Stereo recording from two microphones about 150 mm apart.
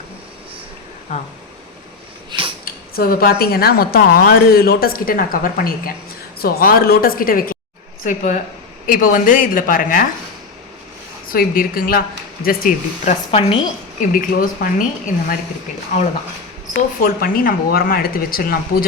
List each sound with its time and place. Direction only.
2.6 s speech: 80° left
6.4 s speech: 80° left
8.0 s speech: 55° left (ahead or behind)
11.3 s speech: 70° left (ahead or behind)
13.1 s a woman's voice: 40° left (ahead or behind)
14.1 s speech: 65° left (ahead or behind)
16.7 s speech: 80° left